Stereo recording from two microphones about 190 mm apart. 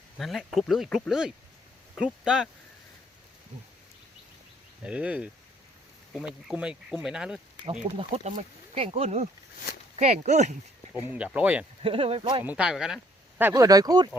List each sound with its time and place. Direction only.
0.2 s speech: centre (ahead or behind)
4.8 s speech: 5° right (ahead or behind)
7.6 s speech: 30° right (ahead or behind)
10.9 s speech: 5° right (ahead or behind)
11.8 s speech: 30° right (ahead or behind)
12.5 s speech: 5° right (ahead or behind)
13.5 s speech: 20° right (ahead or behind)